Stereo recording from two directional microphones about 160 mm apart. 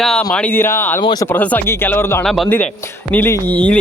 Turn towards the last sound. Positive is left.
turn(degrees=10)  # may be behind; listen again after turning